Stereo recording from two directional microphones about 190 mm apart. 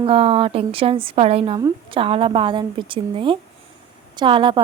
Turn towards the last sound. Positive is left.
turn(degrees=-25)  # may be behind; listen again after turning